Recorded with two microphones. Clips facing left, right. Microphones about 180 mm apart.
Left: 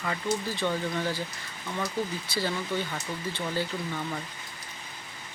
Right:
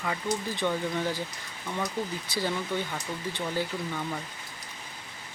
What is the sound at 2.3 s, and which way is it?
Speech, 15° right (ahead or behind).